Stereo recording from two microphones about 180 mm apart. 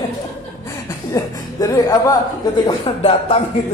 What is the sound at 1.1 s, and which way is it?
A man's voice, 20° left (ahead or behind).